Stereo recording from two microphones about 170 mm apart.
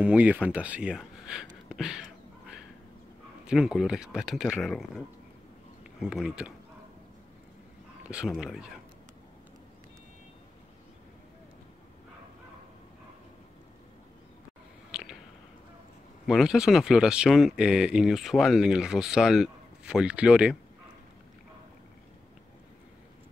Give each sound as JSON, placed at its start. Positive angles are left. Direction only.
{"t": 0.0, "sound": "speech", "side_deg": -10}
{"t": 3.4, "sound": "speech", "side_deg": -5}
{"t": 8.1, "sound": "speech", "side_deg": -5}
{"t": 14.9, "sound": "a sound", "side_deg": -5}
{"t": 16.3, "sound": "speech", "side_deg": 0}